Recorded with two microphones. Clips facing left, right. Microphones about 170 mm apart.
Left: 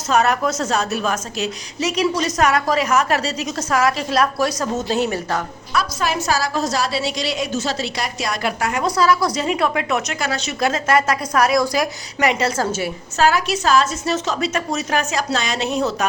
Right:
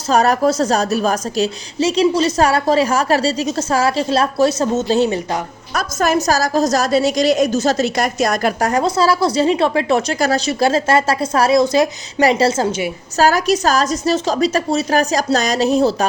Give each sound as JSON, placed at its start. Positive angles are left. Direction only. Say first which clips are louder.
{"t": 0.1, "sound": "a woman's voice", "louder": "right 4 dB", "side_deg": -35}
{"t": 5.7, "sound": "a woman's voice", "louder": "right 4 dB", "side_deg": -45}
{"t": 13.1, "sound": "a woman's voice", "louder": "right 4 dB", "side_deg": -40}